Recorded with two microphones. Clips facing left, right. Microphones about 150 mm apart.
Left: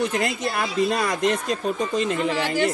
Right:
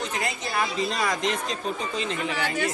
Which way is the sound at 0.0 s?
60° left (ahead or behind).